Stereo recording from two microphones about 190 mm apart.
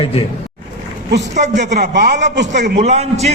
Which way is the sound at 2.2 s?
65° right (ahead or behind).